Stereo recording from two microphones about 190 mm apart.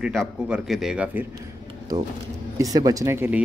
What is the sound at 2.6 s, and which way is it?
Speech, 20° right (ahead or behind).